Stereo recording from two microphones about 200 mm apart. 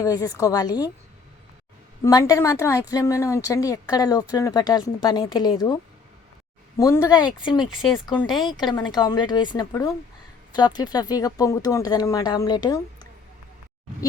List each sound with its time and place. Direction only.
0.0 s a woman's voice: 20° left (ahead or behind)
2.0 s a woman's voice: 15° left (ahead or behind)
6.7 s speech: 15° left (ahead or behind)
7.6 s speech: centre (ahead or behind)
8.4 s speech: 20° left (ahead or behind)